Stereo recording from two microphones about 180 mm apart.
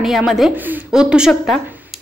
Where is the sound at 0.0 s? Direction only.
Centre (ahead or behind).